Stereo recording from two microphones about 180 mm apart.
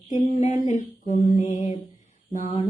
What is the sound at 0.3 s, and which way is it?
Mantra, 40° left (ahead or behind).